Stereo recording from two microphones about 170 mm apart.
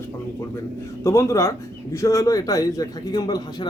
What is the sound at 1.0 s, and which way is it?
Speech, 20° left (ahead or behind).